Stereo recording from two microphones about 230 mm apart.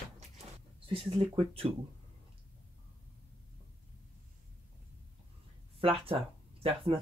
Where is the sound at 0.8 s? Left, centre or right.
Right.